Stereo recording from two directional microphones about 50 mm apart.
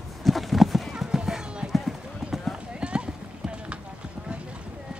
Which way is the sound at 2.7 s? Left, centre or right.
Right.